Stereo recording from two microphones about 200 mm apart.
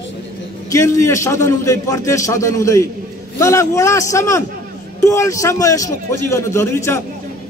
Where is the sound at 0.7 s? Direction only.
15° left (ahead or behind).